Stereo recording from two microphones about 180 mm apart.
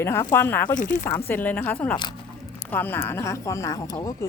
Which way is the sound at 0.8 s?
50° left (ahead or behind).